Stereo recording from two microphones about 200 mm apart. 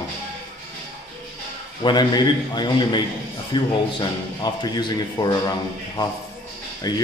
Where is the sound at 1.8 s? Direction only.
20° left (ahead or behind).